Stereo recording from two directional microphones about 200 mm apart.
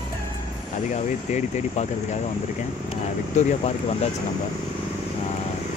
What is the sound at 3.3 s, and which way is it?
Speech, 35° left (ahead or behind).